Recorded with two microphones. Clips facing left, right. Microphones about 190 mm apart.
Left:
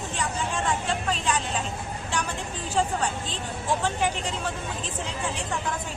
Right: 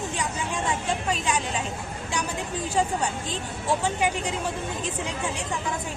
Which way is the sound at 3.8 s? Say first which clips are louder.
Right 1 dB; 10° right (ahead or behind).